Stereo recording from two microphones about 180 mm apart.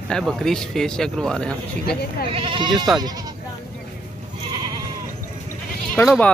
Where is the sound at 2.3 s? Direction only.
30° right (ahead or behind).